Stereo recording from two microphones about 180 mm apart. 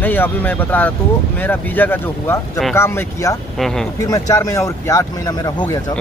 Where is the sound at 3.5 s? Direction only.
Centre (ahead or behind).